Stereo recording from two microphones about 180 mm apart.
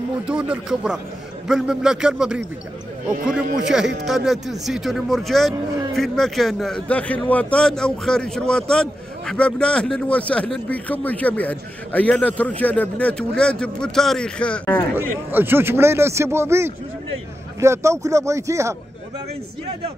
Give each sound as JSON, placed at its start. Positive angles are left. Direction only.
{"t": 0.3, "sound": "a man's voice", "side_deg": -5}
{"t": 3.6, "sound": "a man's voice", "side_deg": -5}
{"t": 15.0, "sound": "a man's voice", "side_deg": -10}